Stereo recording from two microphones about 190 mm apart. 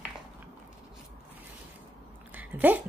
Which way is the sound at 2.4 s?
10° right (ahead or behind).